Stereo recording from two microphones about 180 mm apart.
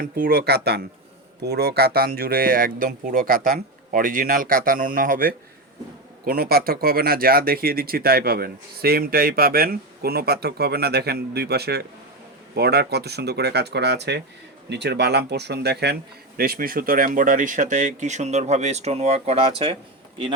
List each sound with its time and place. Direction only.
0.0 s speech: 60° right (ahead or behind)
16.4 s speech: 55° right (ahead or behind); by 19.7 s 35° right (ahead or behind)